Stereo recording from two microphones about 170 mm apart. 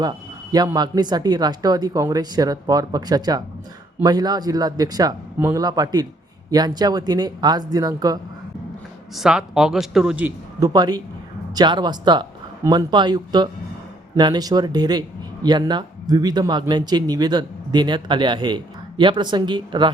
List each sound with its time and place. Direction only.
0.5 s speech: 25° right (ahead or behind)
9.1 s speech: 5° right (ahead or behind)
10.6 s speech: 25° right (ahead or behind)